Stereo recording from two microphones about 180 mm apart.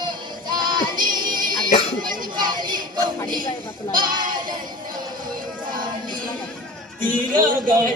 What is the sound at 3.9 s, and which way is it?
Speech, 25° right (ahead or behind).